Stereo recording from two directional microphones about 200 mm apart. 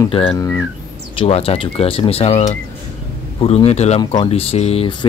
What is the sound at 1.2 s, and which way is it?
Speech, 30° left (ahead or behind).